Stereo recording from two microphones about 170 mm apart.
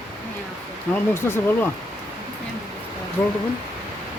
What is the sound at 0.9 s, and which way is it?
Speech, 15° left (ahead or behind).